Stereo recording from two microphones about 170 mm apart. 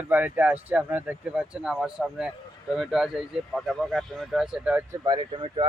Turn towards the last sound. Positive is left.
turn(degrees=-30)  # may be behind; listen again after turning